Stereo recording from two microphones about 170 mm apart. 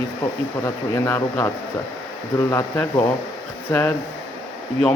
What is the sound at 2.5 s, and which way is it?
Speech, 15° left (ahead or behind).